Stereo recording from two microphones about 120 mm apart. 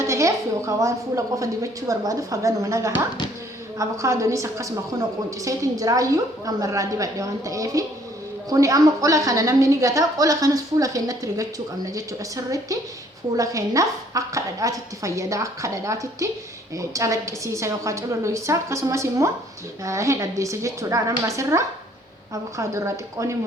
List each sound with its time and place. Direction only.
0.1 s a woman's voice: 25° right (ahead or behind)
12.5 s a woman's voice: 30° right (ahead or behind)